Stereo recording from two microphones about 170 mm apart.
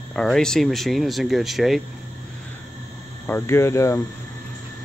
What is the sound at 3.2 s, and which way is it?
Speech, 15° left (ahead or behind).